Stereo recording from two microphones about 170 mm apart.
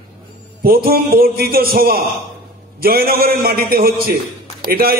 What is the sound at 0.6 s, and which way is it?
A man's voice, 60° right (ahead or behind).